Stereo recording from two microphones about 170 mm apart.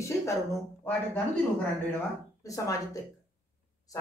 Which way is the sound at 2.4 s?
20° left (ahead or behind).